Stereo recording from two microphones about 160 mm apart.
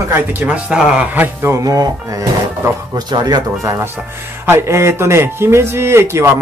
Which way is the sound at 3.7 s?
15° right (ahead or behind).